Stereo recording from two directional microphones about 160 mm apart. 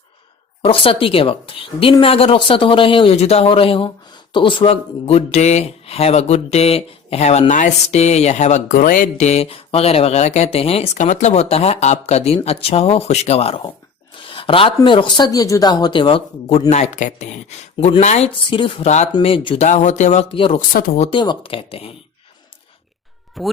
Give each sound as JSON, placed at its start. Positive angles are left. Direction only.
{"t": 0.6, "sound": "speech", "side_deg": 35}
{"t": 14.2, "sound": "a sound", "side_deg": 35}
{"t": 14.8, "sound": "speech", "side_deg": 30}
{"t": 19.6, "sound": "speech", "side_deg": 50}
{"t": 20.3, "sound": "speech", "side_deg": 35}
{"t": 20.6, "sound": "speech", "side_deg": 65}
{"t": 21.0, "sound": "speech", "side_deg": 30}
{"t": 23.4, "sound": "speech", "side_deg": 0}